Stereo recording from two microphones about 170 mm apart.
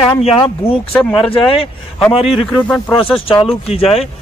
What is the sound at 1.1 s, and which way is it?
Speech, 30° left (ahead or behind).